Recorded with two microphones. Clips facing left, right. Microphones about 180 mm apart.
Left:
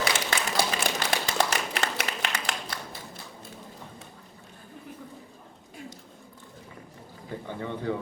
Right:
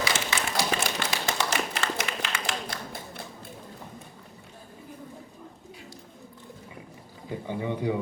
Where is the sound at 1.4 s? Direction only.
60° left (ahead or behind).